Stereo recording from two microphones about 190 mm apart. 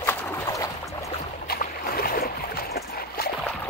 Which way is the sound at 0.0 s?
20° left (ahead or behind).